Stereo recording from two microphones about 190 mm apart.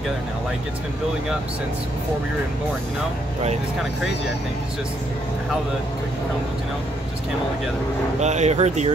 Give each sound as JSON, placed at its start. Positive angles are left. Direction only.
{"t": 8.2, "sound": "speech", "side_deg": -35}